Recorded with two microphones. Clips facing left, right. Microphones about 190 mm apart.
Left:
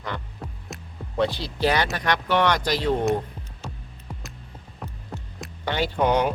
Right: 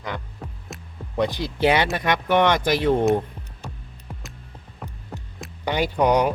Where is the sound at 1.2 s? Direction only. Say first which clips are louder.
Right 2 dB; 15° right (ahead or behind).